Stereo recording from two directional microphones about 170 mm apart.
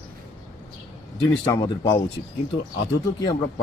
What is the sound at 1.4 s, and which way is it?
Speech, 20° left (ahead or behind).